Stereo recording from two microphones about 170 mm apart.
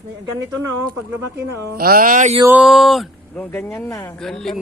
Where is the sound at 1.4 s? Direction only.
60° right (ahead or behind); by 2.4 s 45° right (ahead or behind).